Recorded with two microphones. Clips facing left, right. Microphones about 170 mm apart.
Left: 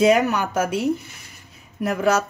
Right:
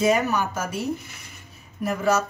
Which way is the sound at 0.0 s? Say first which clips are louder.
Left 4 dB; 70° left (ahead or behind).